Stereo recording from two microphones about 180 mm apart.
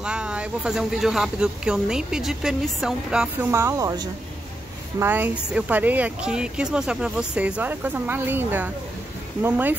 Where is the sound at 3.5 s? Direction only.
15° right (ahead or behind).